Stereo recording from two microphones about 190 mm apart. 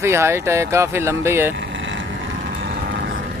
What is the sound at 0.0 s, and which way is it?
Speech, 15° right (ahead or behind).